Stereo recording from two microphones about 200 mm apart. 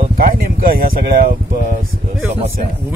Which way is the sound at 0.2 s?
45° right (ahead or behind).